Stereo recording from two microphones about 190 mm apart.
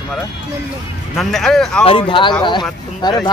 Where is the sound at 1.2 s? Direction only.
Centre (ahead or behind).